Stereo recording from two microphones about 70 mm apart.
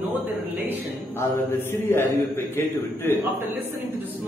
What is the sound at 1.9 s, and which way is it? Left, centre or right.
A man's voice, left.